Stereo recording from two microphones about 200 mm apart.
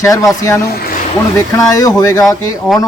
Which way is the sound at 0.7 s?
50° left (ahead or behind).